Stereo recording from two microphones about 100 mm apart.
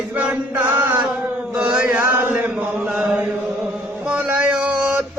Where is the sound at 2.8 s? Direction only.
10° right (ahead or behind).